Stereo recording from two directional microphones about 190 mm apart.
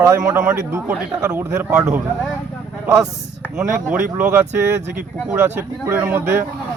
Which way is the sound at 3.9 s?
5° right (ahead or behind).